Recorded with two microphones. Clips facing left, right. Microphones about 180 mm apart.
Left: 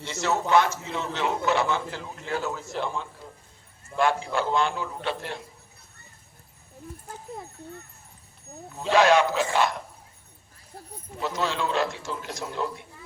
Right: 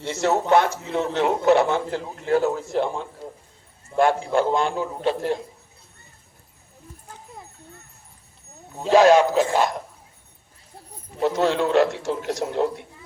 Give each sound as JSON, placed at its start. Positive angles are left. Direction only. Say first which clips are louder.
{"t": 0.0, "sound": "a man's voice", "louder": "right 5 dB", "side_deg": -60}
{"t": 8.7, "sound": "speech", "louder": "right 5 dB", "side_deg": -40}
{"t": 11.2, "sound": "a man's voice", "louder": "right 8 dB", "side_deg": -60}